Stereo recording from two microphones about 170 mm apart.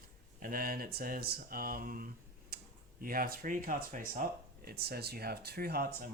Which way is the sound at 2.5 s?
60° right (ahead or behind).